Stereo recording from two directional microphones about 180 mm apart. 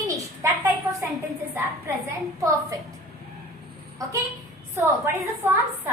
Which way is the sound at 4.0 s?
20° right (ahead or behind).